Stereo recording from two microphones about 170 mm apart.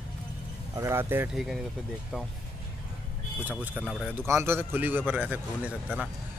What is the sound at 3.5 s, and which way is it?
A man's voice, 10° right (ahead or behind).